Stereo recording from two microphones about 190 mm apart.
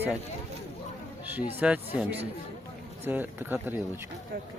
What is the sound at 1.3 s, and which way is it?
Speech, 10° right (ahead or behind).